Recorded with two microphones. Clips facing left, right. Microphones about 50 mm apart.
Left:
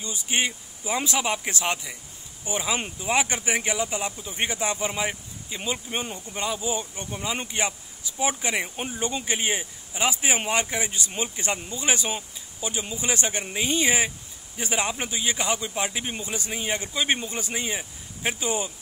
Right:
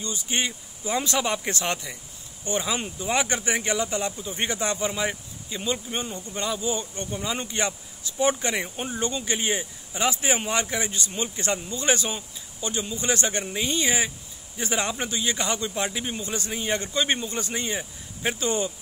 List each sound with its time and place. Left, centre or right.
0.0 s a man's voice: left